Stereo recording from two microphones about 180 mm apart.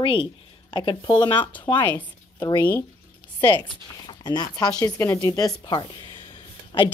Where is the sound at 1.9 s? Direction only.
10° left (ahead or behind).